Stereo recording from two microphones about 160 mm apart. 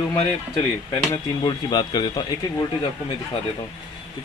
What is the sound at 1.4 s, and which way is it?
Speech, 25° left (ahead or behind).